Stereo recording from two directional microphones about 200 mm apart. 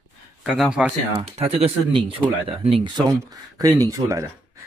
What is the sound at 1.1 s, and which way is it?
Speech, 30° right (ahead or behind).